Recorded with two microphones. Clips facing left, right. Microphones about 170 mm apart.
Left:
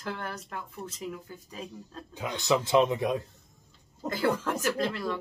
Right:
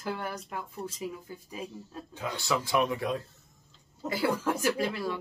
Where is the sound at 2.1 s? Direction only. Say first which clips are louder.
Left 4 dB; 15° left (ahead or behind).